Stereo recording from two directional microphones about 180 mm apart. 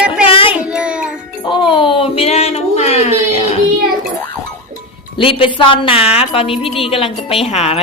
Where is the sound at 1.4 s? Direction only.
25° left (ahead or behind).